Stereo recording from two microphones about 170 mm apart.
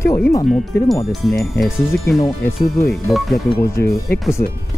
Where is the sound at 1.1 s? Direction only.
Centre (ahead or behind).